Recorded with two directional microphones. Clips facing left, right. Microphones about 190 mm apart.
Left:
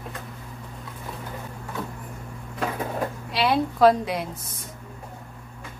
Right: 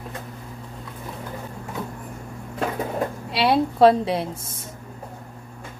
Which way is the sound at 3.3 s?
30° right (ahead or behind).